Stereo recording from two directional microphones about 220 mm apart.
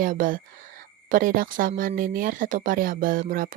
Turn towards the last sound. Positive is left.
turn(degrees=-40)  # may be behind; listen again after turning